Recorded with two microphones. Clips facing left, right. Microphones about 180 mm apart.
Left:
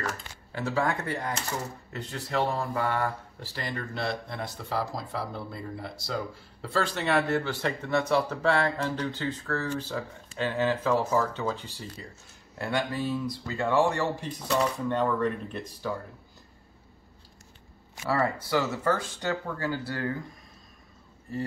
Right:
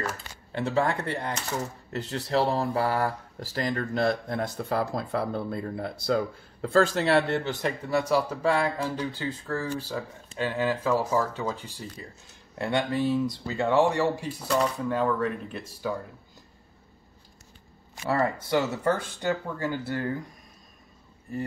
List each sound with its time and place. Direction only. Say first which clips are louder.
0.5 s speech: right 2 dB; 25° right (ahead or behind)
12.5 s speech: right 3 dB; 25° right (ahead or behind)
14.5 s speech: right 1 dB; centre (ahead or behind)
18.1 s speech: right 1 dB; 25° right (ahead or behind)